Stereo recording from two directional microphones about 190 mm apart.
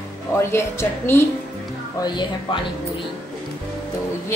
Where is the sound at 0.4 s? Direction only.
15° left (ahead or behind).